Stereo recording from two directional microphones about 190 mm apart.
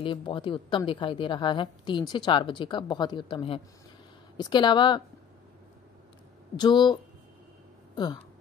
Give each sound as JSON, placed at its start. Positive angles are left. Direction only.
{"t": 0.0, "sound": "a woman's voice", "side_deg": 25}
{"t": 6.5, "sound": "a woman's voice", "side_deg": 25}